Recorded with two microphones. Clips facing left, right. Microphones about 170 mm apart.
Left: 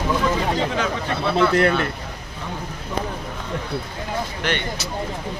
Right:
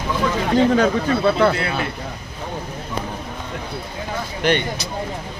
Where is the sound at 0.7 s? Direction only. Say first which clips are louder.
Right 7 dB; 50° right (ahead or behind).